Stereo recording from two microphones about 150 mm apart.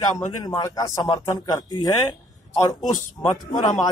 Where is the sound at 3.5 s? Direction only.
50° left (ahead or behind).